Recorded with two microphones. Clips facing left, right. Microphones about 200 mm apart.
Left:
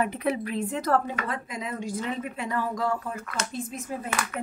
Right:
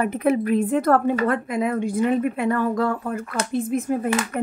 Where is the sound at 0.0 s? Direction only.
50° right (ahead or behind).